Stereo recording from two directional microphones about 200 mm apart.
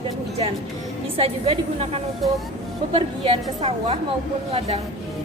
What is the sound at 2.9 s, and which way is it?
A woman's voice, 25° right (ahead or behind).